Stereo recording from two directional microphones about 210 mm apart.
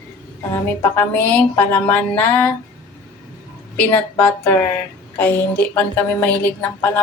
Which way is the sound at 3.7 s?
5° left (ahead or behind).